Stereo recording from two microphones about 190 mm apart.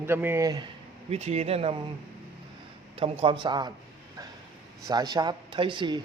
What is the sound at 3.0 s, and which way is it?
Speech, 30° right (ahead or behind).